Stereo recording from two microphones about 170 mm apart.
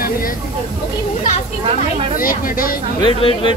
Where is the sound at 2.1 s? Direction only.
55° left (ahead or behind).